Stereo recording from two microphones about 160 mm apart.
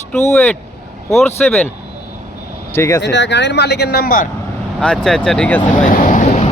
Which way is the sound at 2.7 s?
20° left (ahead or behind).